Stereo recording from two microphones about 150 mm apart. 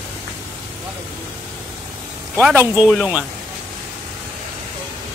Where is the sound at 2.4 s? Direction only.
10° right (ahead or behind).